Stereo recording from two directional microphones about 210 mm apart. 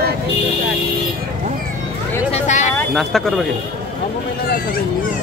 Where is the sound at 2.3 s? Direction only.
35° left (ahead or behind).